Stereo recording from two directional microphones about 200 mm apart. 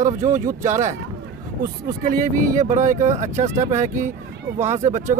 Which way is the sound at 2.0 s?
40° right (ahead or behind).